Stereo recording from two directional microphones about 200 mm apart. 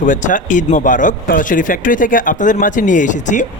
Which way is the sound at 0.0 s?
40° left (ahead or behind).